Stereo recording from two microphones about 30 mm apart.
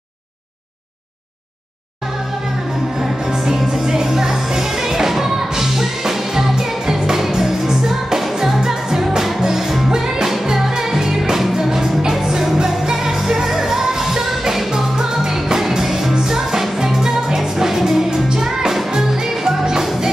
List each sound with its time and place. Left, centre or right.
3.3 s music: centre
19.4 s music: right